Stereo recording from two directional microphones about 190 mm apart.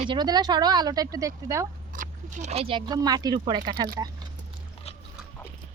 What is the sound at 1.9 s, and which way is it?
Speech, 40° right (ahead or behind).